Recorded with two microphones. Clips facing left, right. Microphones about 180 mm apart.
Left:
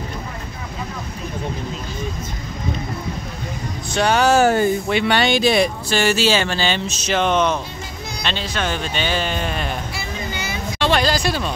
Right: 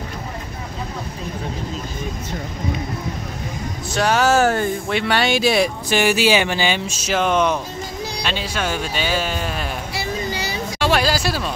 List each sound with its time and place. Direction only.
3.9 s speech: centre (ahead or behind)
9.9 s a sound: 35° right (ahead or behind)
10.8 s speech: 5° right (ahead or behind)